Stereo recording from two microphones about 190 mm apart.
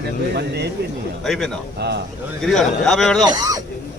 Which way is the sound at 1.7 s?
60° right (ahead or behind).